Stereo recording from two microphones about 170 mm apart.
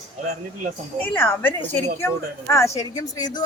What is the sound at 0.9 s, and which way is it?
A man's voice, 10° left (ahead or behind).